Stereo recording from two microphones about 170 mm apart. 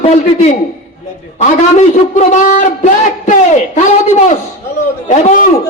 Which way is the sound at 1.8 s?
45° left (ahead or behind).